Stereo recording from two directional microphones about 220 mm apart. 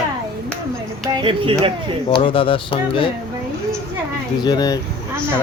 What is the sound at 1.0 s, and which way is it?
Speech, 20° right (ahead or behind).